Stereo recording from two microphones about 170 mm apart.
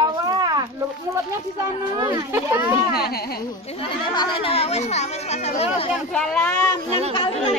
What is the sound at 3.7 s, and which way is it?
Speech, 25° left (ahead or behind).